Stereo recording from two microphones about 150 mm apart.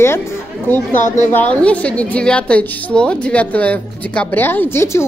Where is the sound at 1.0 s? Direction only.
55° left (ahead or behind).